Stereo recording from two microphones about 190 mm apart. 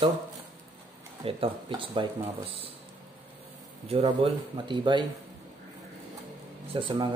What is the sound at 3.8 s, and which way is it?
Speech, 30° right (ahead or behind).